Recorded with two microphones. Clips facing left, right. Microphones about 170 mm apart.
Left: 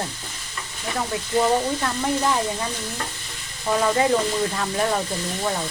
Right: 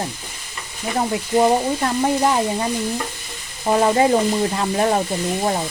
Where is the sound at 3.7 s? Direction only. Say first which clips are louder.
Right 4 dB; 35° right (ahead or behind).